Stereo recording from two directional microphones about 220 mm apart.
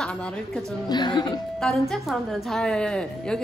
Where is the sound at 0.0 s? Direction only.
5° left (ahead or behind).